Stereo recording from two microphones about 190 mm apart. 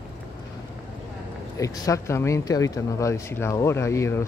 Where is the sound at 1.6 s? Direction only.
15° left (ahead or behind).